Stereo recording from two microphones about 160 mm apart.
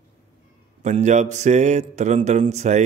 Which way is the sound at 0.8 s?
50° right (ahead or behind).